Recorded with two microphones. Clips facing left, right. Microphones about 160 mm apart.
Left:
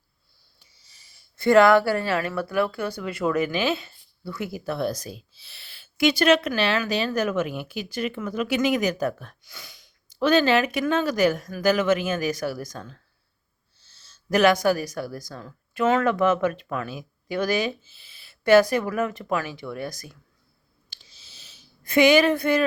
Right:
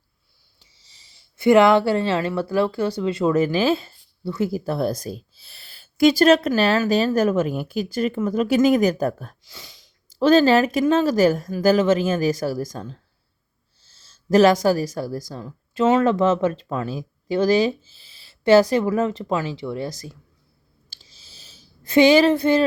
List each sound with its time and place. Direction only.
1.5 s speech: 20° right (ahead or behind)
14.1 s speech: 35° right (ahead or behind)
20.9 s a sound: 35° right (ahead or behind)